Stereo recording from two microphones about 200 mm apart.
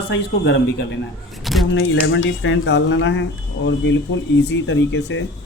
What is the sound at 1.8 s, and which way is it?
A woman's voice, 70° left (ahead or behind).